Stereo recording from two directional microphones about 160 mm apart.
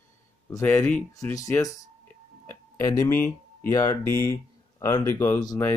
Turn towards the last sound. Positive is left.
turn(degrees=15)  # may be behind; listen again after turning